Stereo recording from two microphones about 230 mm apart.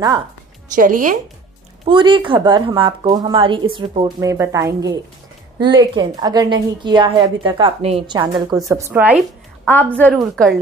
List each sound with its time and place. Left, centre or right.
0.7 s a woman's voice: right
1.9 s a woman's voice: right; by 10.6 s centre